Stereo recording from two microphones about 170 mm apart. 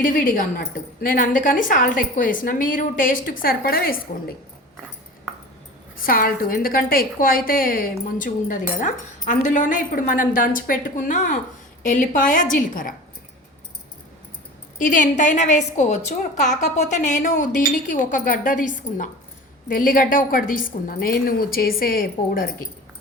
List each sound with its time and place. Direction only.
0.0 s a woman's voice: 50° left (ahead or behind)
6.0 s a woman's voice: 55° left (ahead or behind)
14.8 s a woman's voice: 50° left (ahead or behind)